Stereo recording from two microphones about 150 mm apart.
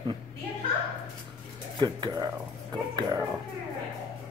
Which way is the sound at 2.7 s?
25° right (ahead or behind).